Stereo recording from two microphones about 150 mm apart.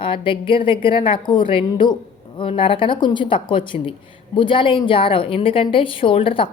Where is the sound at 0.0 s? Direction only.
35° left (ahead or behind).